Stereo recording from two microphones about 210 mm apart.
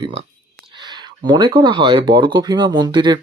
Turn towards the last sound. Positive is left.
turn(degrees=-20)  # may be behind; listen again after turning